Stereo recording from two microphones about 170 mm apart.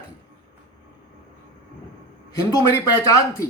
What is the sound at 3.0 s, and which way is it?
Speech, 20° left (ahead or behind).